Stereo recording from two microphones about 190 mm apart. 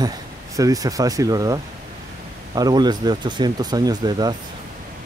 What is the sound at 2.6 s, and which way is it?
Speech, 20° right (ahead or behind).